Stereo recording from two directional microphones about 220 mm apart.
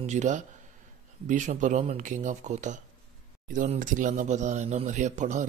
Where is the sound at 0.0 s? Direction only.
30° right (ahead or behind).